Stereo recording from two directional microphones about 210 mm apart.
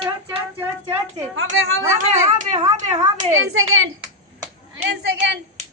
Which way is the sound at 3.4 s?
75° right (ahead or behind).